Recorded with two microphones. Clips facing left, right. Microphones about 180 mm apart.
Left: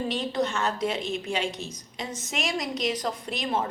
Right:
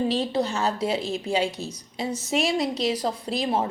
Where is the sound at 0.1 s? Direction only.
30° right (ahead or behind).